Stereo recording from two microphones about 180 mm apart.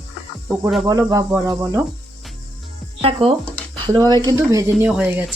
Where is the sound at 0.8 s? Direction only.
20° right (ahead or behind).